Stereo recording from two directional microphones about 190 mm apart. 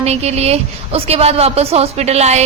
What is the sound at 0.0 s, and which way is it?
A woman's voice, 35° right (ahead or behind).